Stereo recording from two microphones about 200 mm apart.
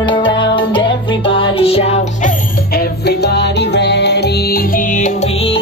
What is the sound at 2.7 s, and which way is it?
Music, 50° left (ahead or behind).